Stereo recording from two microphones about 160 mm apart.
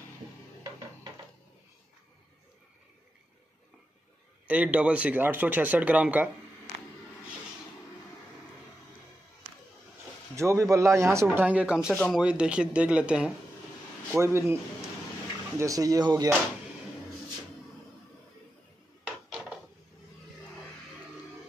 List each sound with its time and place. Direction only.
4.5 s speech: 10° right (ahead or behind)
10.3 s speech: 15° right (ahead or behind)
19.0 s a sound: 5° right (ahead or behind)